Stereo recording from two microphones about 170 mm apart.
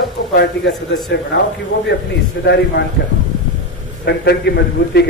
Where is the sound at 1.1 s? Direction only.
90° left.